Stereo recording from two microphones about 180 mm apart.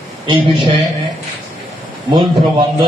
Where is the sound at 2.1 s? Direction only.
25° right (ahead or behind).